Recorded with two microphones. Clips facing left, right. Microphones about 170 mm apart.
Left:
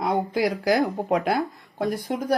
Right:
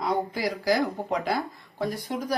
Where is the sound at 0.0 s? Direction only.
50° left (ahead or behind).